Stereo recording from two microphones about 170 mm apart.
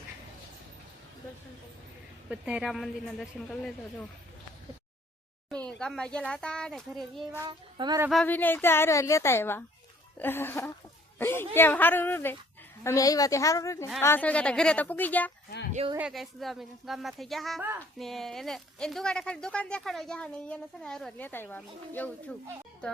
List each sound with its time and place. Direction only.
2.3 s speech: 5° right (ahead or behind)
5.5 s a child's voice: 5° left (ahead or behind)
7.4 s speech: 25° right (ahead or behind)
8.1 s a woman's voice: 10° left (ahead or behind)
16.0 s speech: centre (ahead or behind)
17.6 s speech: 15° right (ahead or behind)
18.0 s speech: centre (ahead or behind)